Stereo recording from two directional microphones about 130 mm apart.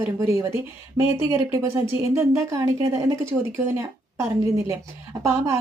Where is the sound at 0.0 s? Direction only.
25° right (ahead or behind).